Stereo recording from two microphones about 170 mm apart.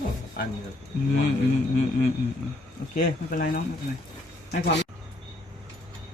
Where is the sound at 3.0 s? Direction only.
55° left (ahead or behind).